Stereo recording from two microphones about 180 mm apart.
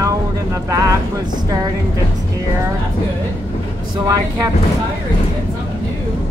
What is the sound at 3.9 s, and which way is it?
Speech, 20° right (ahead or behind).